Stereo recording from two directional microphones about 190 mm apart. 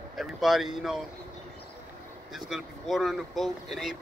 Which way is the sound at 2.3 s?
Centre (ahead or behind).